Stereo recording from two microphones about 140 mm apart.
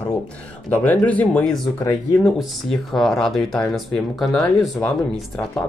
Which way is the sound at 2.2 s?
Centre (ahead or behind).